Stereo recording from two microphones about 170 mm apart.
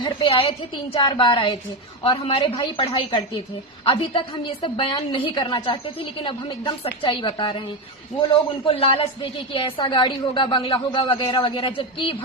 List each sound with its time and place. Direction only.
0.0 s a woman's voice: 30° left (ahead or behind)